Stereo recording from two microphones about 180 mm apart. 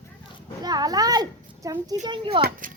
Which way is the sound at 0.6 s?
20° right (ahead or behind).